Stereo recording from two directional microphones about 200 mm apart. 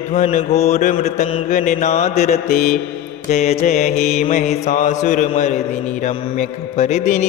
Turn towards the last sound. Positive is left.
turn(degrees=35)  # may be behind; listen again after turning